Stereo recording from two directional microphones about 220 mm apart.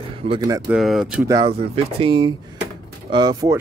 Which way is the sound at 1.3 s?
20° right (ahead or behind).